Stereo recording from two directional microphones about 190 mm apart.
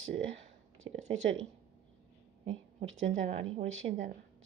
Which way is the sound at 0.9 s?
40° right (ahead or behind).